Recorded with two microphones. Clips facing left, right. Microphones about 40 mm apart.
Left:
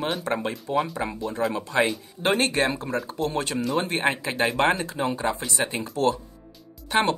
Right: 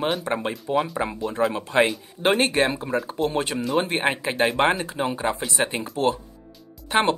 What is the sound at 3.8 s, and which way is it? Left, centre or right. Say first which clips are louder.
Speech: right 1 dB; centre.